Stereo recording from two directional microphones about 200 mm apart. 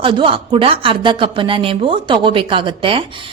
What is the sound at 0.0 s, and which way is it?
A woman's voice, 25° right (ahead or behind).